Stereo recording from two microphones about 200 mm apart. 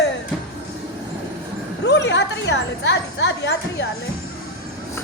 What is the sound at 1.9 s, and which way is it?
A woman's voice, 60° left (ahead or behind).